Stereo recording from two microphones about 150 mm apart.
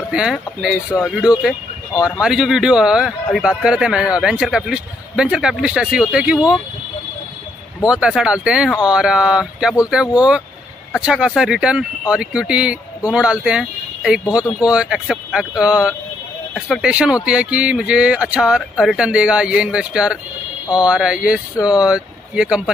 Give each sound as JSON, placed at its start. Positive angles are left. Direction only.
{"t": 0.1, "sound": "speech", "side_deg": -5}
{"t": 0.8, "sound": "speech", "side_deg": 20}
{"t": 2.0, "sound": "speech", "side_deg": -5}
{"t": 7.9, "sound": "speech", "side_deg": -5}